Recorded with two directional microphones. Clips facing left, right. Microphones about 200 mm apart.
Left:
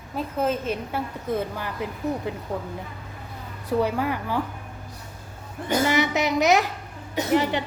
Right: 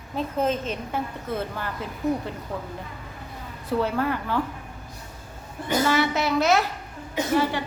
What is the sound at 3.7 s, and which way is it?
Speech, 15° left (ahead or behind).